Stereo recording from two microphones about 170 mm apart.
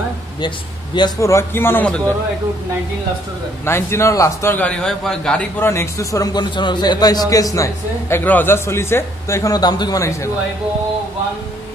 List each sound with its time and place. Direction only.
0.9 s a man's voice: 20° left (ahead or behind)
3.6 s a man's voice: 15° left (ahead or behind)